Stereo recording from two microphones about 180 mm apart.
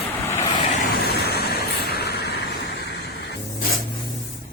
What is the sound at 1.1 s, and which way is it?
Vehicle, 60° left (ahead or behind).